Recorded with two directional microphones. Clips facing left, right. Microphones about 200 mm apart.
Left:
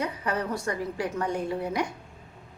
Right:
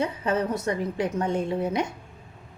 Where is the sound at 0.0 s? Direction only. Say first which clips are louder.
Right 4 dB; 25° right (ahead or behind).